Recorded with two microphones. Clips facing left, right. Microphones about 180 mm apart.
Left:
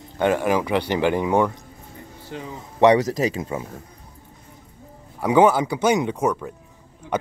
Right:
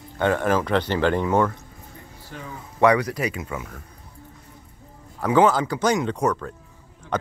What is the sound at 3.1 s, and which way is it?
Speech, 35° left (ahead or behind).